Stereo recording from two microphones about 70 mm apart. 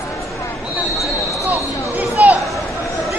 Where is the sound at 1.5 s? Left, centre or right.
Right.